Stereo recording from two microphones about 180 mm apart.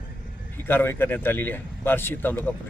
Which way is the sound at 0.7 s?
10° left (ahead or behind).